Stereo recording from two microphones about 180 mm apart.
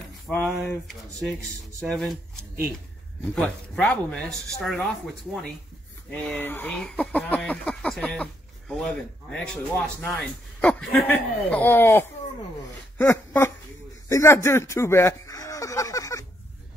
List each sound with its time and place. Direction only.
0.3 s speech: 10° left (ahead or behind)
6.1 s speech: 10° left (ahead or behind)
12.9 s a sound: 10° left (ahead or behind)